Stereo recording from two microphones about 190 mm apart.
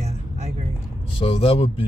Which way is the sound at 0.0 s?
35° right (ahead or behind).